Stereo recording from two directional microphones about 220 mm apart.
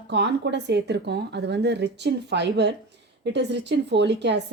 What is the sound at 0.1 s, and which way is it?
A woman's voice, 50° right (ahead or behind).